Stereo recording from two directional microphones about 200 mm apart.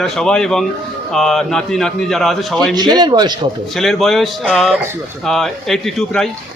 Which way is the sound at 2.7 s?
20° right (ahead or behind).